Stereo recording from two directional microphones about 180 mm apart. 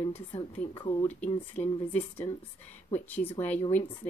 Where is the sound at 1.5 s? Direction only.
10° left (ahead or behind).